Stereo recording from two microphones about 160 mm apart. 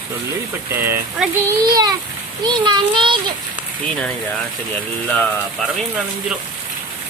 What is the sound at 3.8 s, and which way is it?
Speech, 5° left (ahead or behind).